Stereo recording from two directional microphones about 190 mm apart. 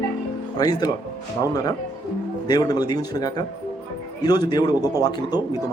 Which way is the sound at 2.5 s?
20° left (ahead or behind).